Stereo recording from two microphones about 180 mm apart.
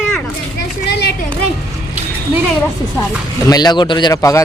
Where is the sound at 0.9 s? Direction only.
70° left (ahead or behind).